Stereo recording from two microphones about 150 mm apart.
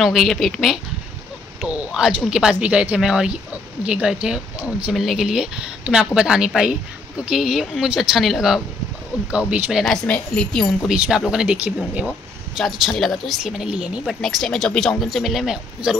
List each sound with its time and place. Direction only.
0.0 s a woman's voice: centre (ahead or behind)
10.0 s a woman's voice: 10° left (ahead or behind)
10.9 s a woman's voice: 5° right (ahead or behind)